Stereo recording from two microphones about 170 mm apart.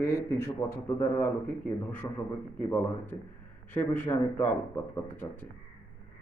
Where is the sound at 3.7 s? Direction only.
10° left (ahead or behind).